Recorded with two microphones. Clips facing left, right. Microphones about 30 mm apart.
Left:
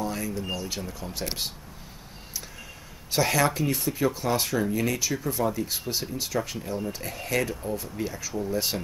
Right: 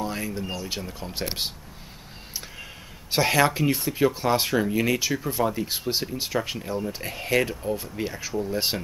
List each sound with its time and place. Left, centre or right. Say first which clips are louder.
0.0 s speech: right 1 dB; right
3.1 s speech: right 3 dB; right